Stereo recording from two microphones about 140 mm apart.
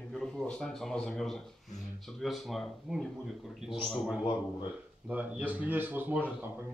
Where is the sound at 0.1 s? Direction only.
5° left (ahead or behind).